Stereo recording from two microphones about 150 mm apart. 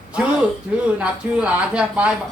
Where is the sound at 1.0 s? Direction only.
10° right (ahead or behind).